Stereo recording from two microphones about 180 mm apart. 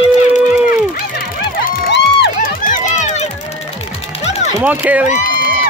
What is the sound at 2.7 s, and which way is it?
Run, 45° left (ahead or behind).